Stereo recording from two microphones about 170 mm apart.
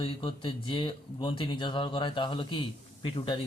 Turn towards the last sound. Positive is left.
turn(degrees=30)  # may be behind; listen again after turning